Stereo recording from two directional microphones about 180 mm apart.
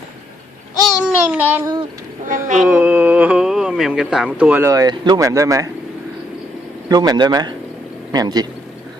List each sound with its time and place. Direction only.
0.9 s babbling: centre (ahead or behind)
1.4 s a child's voice: 10° right (ahead or behind)
6.8 s speech: 20° right (ahead or behind)